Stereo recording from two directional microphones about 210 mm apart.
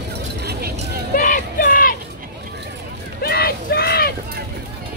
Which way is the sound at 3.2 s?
45° left (ahead or behind).